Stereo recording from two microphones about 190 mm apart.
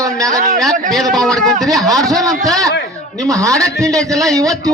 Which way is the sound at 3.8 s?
5° left (ahead or behind).